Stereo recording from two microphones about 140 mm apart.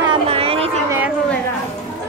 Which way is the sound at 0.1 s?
45° right (ahead or behind).